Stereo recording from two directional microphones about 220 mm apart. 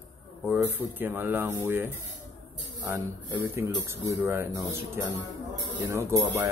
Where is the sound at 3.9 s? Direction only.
10° right (ahead or behind).